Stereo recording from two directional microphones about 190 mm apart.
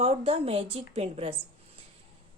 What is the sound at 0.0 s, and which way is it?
A woman's voice, 30° right (ahead or behind).